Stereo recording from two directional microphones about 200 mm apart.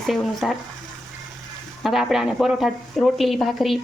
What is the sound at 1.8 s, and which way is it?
Speech, centre (ahead or behind).